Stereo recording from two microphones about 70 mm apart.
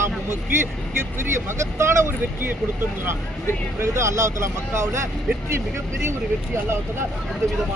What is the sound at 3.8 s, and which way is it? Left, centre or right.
Speech, right.